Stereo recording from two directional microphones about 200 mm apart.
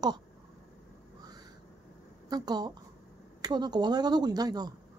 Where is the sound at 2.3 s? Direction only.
20° right (ahead or behind).